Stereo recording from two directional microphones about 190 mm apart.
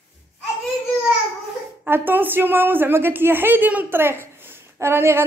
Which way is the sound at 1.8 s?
10° right (ahead or behind).